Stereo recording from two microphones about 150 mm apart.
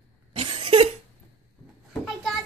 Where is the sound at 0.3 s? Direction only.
35° right (ahead or behind).